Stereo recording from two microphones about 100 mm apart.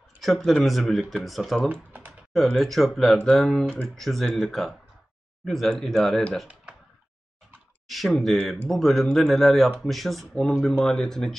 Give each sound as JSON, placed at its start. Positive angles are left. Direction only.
{"t": 0.2, "sound": "speech", "side_deg": 0}
{"t": 1.7, "sound": "speech", "side_deg": -20}
{"t": 2.5, "sound": "speech", "side_deg": 0}
{"t": 7.9, "sound": "speech", "side_deg": 0}